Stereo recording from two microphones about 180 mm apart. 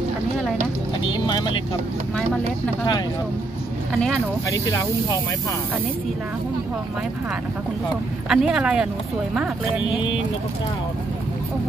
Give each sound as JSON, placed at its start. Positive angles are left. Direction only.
{"t": 1.1, "sound": "speech", "side_deg": 25}
{"t": 4.5, "sound": "speech", "side_deg": 20}
{"t": 8.3, "sound": "speech", "side_deg": -5}